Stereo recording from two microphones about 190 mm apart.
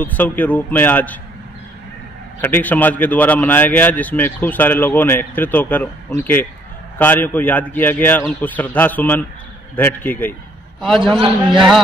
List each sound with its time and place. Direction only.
0.0 s speech: 10° left (ahead or behind)
2.4 s speech: 10° left (ahead or behind)
7.0 s speech: 10° left (ahead or behind)
11.0 s a man's voice: 25° right (ahead or behind)
11.5 s speech: centre (ahead or behind)